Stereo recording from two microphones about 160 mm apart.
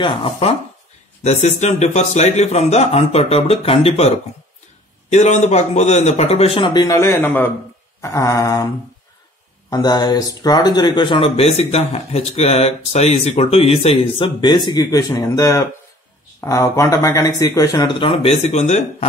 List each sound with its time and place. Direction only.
0.0 s a man's voice: 35° left (ahead or behind)
5.1 s a man's voice: 45° left (ahead or behind); by 8.6 s 20° left (ahead or behind)
9.7 s speech: 25° left (ahead or behind)
17.9 s a man's voice: 35° left (ahead or behind)